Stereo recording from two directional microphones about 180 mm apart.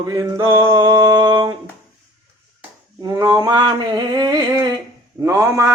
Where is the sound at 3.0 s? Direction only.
20° right (ahead or behind).